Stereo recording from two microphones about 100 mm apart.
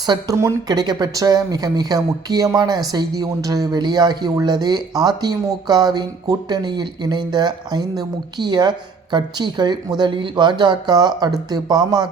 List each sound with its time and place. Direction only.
0.0 s speech: 45° right (ahead or behind)